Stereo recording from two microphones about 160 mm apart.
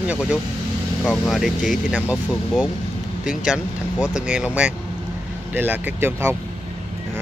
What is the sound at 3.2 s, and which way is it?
Speech, 5° right (ahead or behind).